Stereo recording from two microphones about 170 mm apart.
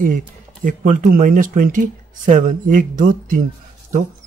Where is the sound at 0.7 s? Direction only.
55° right (ahead or behind).